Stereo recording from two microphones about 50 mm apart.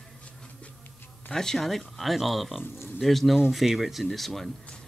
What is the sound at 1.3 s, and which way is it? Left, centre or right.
Speech, centre.